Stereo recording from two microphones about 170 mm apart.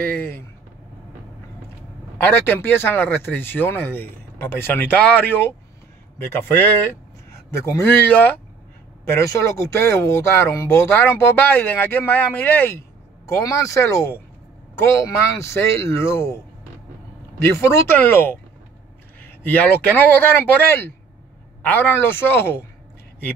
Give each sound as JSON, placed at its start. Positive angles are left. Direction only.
{"t": 0.0, "sound": "speech", "side_deg": 10}
{"t": 2.1, "sound": "speech", "side_deg": 15}
{"t": 19.4, "sound": "speech", "side_deg": 10}